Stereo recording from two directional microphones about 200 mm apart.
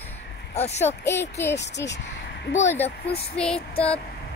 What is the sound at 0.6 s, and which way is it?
Speech, 35° left (ahead or behind).